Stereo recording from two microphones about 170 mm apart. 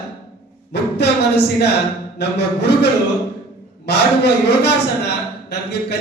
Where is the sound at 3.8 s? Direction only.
75° left (ahead or behind).